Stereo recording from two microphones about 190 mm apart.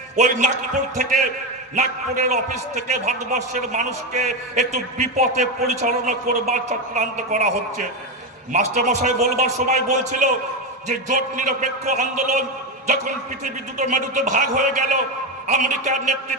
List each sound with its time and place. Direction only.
0.2 s a man's voice: 40° right (ahead or behind)